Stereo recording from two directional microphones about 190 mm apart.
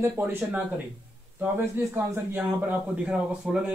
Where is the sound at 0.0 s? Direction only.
10° right (ahead or behind).